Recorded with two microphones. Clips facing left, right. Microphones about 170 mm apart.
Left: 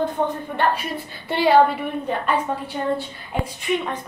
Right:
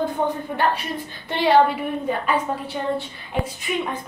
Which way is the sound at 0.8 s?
65° left (ahead or behind).